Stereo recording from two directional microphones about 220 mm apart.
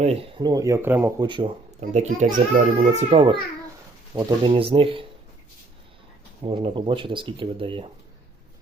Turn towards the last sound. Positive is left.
turn(degrees=-25)  # may be behind; listen again after turning